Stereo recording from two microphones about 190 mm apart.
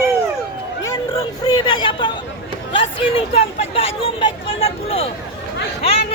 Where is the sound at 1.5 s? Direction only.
20° left (ahead or behind).